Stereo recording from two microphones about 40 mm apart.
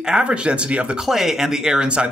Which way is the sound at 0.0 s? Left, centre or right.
Right.